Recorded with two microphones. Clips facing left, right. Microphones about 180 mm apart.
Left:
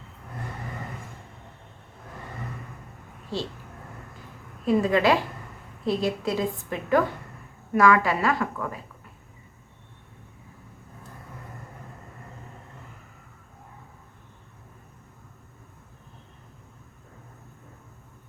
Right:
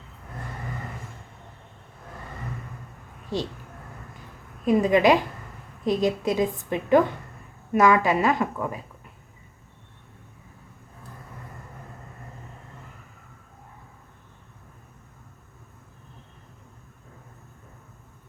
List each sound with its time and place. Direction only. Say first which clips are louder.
3.3 s a woman's voice: right 2 dB; 20° right (ahead or behind)
4.6 s a woman's voice: right 2 dB; 15° right (ahead or behind)